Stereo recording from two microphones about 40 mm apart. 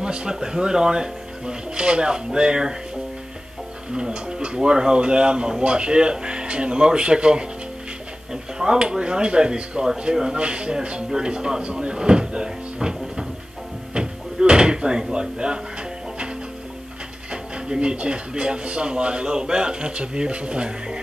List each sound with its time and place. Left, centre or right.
0.0 s speech: right
3.9 s speech: centre
13.9 s door: right
17.3 s speech: right